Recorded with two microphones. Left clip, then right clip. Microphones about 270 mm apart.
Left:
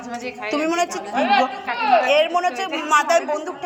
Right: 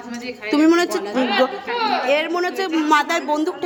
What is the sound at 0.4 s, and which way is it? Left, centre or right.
A woman's voice, centre.